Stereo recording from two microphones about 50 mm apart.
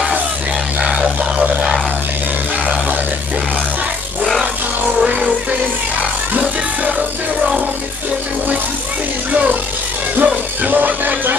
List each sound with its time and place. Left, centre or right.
0.8 s music: centre
5.0 s music: right
9.3 s music: right